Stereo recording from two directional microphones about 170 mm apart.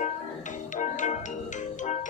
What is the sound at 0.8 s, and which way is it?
Music, 45° left (ahead or behind).